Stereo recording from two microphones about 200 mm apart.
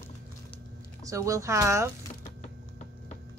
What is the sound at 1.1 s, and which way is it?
Speech, 15° right (ahead or behind).